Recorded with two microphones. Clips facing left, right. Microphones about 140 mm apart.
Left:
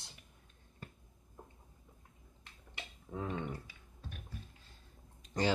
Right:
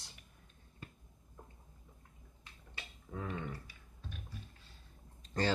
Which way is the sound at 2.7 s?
20° left (ahead or behind).